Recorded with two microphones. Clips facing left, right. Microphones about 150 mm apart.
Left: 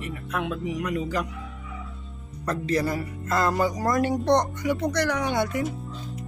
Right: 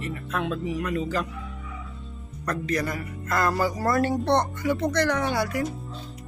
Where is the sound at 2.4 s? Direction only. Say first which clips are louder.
Left 2 dB; 30° left (ahead or behind).